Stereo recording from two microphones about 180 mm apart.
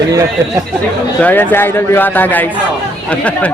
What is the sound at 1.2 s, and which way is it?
Speech, 10° left (ahead or behind).